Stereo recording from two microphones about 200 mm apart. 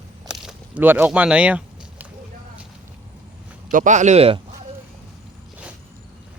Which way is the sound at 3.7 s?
40° right (ahead or behind).